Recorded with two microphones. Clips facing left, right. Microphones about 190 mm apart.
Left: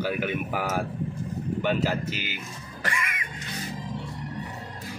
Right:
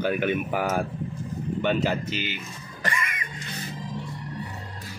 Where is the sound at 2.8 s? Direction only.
10° left (ahead or behind).